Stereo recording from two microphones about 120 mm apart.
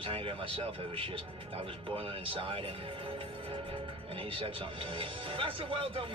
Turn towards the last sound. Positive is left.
turn(degrees=-45)  # may be behind; listen again after turning